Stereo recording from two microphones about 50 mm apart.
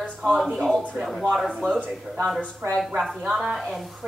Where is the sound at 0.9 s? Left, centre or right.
Centre.